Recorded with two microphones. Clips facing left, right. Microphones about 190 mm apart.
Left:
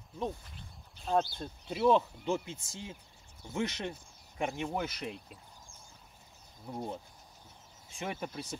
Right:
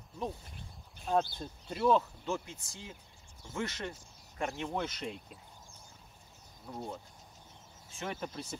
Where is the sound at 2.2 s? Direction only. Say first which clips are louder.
Left 3 dB; 20° left (ahead or behind); by 5.4 s centre (ahead or behind).